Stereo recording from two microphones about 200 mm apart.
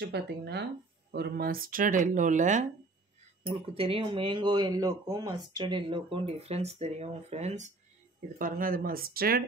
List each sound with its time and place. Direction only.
0.0 s speech: 55° right (ahead or behind)